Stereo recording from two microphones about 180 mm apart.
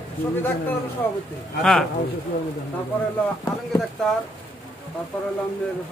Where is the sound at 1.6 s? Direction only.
5° left (ahead or behind).